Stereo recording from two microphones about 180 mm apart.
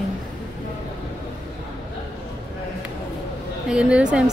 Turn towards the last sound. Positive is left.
turn(degrees=-5)  # may be behind; listen again after turning